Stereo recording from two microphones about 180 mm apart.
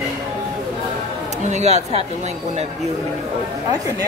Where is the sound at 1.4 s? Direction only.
40° right (ahead or behind).